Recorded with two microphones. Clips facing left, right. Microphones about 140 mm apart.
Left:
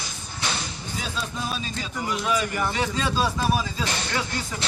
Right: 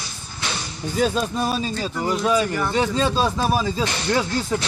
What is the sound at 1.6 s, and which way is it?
Speech, 35° right (ahead or behind).